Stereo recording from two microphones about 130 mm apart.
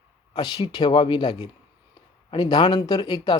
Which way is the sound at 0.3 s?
35° left (ahead or behind).